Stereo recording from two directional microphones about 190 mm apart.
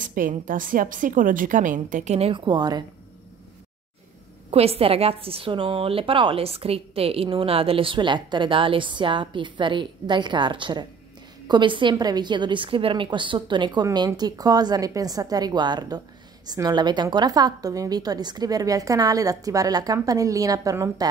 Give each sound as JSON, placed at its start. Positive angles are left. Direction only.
{"t": 0.0, "sound": "a woman's voice", "side_deg": -45}
{"t": 4.5, "sound": "a woman's voice", "side_deg": -30}